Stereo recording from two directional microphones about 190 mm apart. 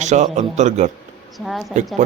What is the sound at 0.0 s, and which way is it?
Speech, 35° right (ahead or behind).